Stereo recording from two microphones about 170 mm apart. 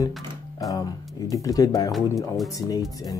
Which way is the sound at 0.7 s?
20° left (ahead or behind).